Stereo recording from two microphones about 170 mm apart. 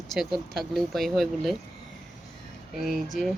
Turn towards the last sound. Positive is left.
turn(degrees=0)  # may be behind; listen again after turning